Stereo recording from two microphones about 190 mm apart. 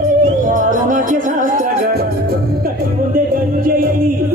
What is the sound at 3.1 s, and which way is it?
Music, 50° right (ahead or behind).